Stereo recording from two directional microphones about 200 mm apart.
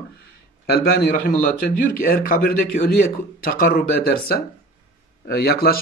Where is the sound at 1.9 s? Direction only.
45° left (ahead or behind).